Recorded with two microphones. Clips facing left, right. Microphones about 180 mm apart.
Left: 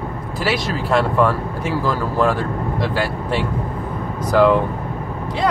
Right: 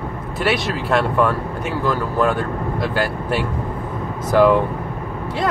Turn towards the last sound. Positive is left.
turn(degrees=0)  # may be behind; listen again after turning